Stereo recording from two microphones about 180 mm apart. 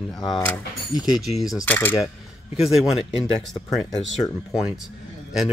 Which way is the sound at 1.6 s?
10° left (ahead or behind).